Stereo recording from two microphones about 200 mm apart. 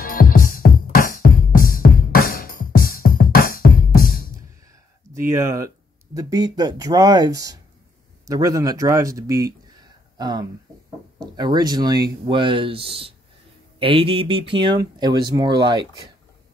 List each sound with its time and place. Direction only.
0.0 s music: 45° left (ahead or behind)
5.3 s speech: 15° right (ahead or behind)